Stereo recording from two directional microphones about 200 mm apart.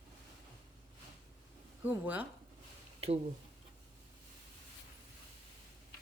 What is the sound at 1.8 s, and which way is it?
Speech, 10° right (ahead or behind).